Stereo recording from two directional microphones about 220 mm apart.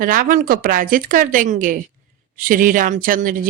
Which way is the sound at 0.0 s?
40° right (ahead or behind).